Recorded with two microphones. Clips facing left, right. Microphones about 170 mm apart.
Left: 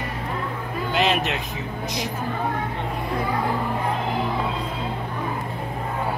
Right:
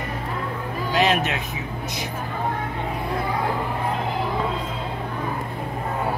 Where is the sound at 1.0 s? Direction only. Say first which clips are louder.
Right 1 dB; centre (ahead or behind).